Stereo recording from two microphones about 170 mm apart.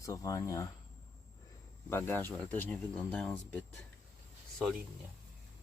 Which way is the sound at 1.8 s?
15° left (ahead or behind).